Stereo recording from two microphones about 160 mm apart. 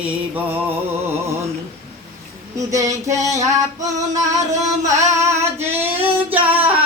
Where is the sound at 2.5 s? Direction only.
20° right (ahead or behind).